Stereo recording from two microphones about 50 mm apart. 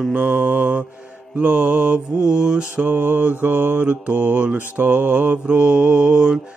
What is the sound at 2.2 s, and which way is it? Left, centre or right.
Mantra, centre.